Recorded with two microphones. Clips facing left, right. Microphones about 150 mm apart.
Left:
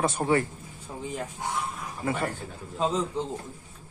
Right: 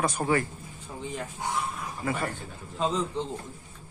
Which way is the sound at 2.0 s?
30° left (ahead or behind).